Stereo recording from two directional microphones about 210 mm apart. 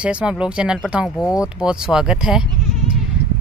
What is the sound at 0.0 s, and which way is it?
Speech, 5° right (ahead or behind).